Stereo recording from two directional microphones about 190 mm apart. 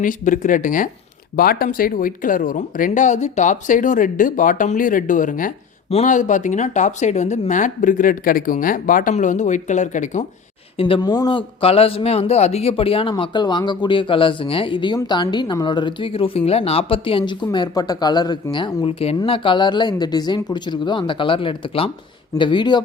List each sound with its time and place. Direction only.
0.0 s speech: 45° left (ahead or behind)
10.8 s speech: 25° left (ahead or behind)